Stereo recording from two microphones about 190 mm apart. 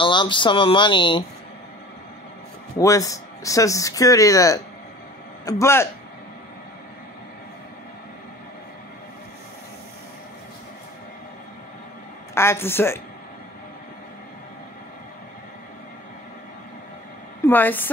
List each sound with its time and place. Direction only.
0.0 s speech: 25° left (ahead or behind)
2.8 s speech: 15° left (ahead or behind)
12.4 s speech: 15° left (ahead or behind)
17.5 s speech: 10° left (ahead or behind)